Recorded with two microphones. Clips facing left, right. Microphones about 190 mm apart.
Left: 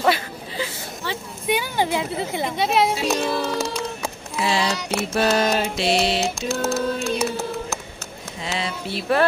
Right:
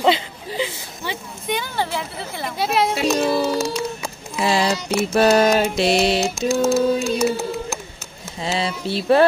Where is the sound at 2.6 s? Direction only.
Centre (ahead or behind).